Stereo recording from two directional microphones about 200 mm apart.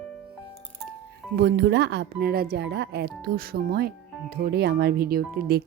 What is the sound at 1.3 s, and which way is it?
Speech, 60° right (ahead or behind).